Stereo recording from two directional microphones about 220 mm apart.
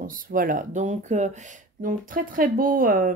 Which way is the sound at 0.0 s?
40° right (ahead or behind).